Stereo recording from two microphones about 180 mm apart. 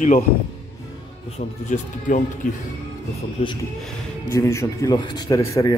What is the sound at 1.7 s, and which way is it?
Speech, 45° left (ahead or behind).